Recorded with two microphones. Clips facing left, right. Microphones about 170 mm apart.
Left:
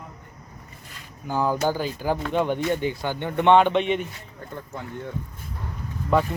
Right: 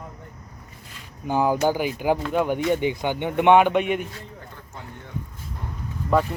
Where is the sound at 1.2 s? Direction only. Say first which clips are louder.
Right 3 dB; 15° right (ahead or behind).